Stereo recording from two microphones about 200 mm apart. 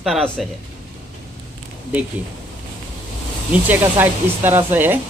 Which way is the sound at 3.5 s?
10° right (ahead or behind).